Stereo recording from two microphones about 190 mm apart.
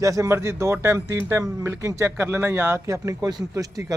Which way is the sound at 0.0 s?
15° right (ahead or behind).